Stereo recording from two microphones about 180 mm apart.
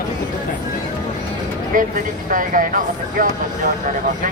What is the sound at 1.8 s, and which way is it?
Speech, 50° right (ahead or behind).